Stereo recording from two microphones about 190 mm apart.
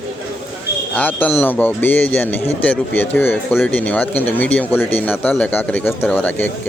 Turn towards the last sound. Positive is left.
turn(degrees=5)  # may be behind; listen again after turning